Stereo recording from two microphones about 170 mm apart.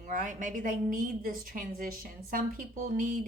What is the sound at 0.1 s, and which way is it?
A woman's voice, 50° right (ahead or behind).